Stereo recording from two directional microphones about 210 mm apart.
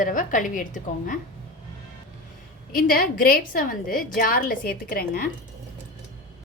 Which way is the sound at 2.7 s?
45° left (ahead or behind).